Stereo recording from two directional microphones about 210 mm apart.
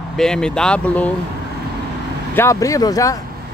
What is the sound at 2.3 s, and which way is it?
Speech, 15° left (ahead or behind).